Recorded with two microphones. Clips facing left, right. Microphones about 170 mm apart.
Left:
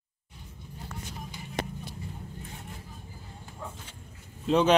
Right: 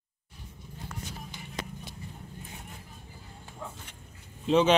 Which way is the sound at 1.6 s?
65° left (ahead or behind).